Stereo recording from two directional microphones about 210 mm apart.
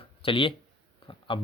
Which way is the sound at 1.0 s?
25° left (ahead or behind).